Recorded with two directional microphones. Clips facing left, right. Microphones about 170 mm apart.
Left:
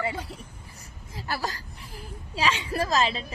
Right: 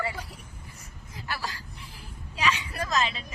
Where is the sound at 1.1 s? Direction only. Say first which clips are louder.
Left 4 dB; 40° left (ahead or behind).